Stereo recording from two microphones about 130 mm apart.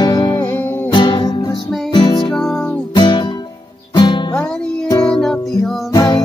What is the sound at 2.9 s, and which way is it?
Music, 35° left (ahead or behind).